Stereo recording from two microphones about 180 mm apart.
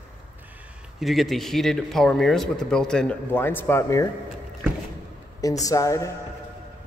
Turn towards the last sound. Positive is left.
turn(degrees=15)  # may be behind; listen again after turning